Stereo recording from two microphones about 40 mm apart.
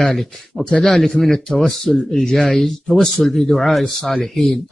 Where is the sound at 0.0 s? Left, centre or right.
Centre.